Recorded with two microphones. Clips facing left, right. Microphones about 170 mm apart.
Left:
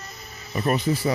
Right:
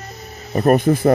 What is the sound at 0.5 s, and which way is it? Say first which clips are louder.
Speech: right 9 dB; 50° right (ahead or behind).